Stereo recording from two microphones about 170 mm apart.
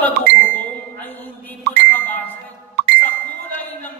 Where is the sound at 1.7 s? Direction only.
80° right.